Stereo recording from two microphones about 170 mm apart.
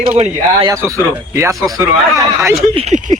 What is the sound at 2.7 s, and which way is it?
Speech, 45° right (ahead or behind).